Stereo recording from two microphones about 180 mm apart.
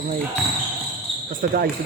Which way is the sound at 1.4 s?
55° right (ahead or behind).